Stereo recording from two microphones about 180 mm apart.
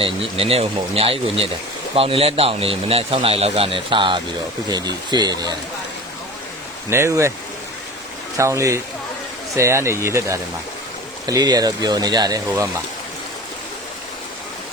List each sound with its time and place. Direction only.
0.0 s speech: 30° right (ahead or behind)
6.9 s speech: 15° right (ahead or behind)
8.4 s speech: 15° right (ahead or behind)